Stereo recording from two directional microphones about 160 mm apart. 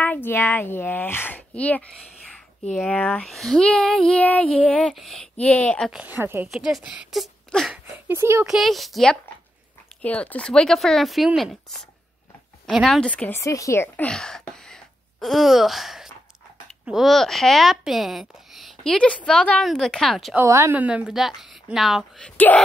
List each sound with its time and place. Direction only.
0.0 s speech: 10° left (ahead or behind)
5.9 s a woman's voice: 5° right (ahead or behind)
6.5 s speech: centre (ahead or behind)
8.1 s a woman's voice: 15° right (ahead or behind)
8.5 s a woman's voice: centre (ahead or behind)
20.3 s speech: 15° right (ahead or behind); by 22.3 s centre (ahead or behind)